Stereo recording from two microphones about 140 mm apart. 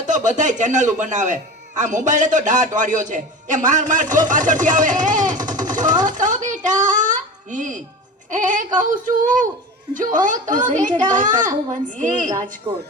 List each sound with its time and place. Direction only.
0.3 s a man's voice: 60° right (ahead or behind)
12.3 s speech: 25° right (ahead or behind)